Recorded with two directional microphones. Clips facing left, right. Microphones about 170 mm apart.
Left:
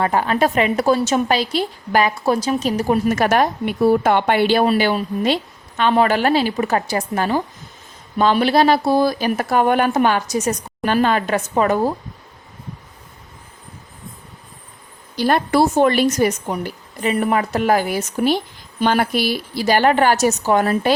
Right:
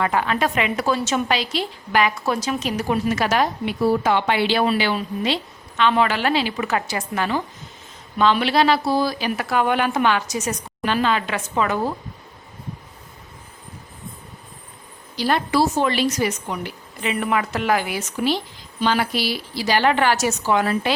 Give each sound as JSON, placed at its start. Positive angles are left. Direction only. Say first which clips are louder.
{"t": 0.0, "sound": "a woman's voice", "louder": "left 4 dB", "side_deg": 40}
{"t": 15.1, "sound": "a woman's voice", "louder": "left 4 dB", "side_deg": 50}